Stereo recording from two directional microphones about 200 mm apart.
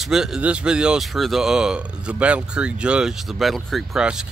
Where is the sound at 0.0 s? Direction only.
Centre (ahead or behind).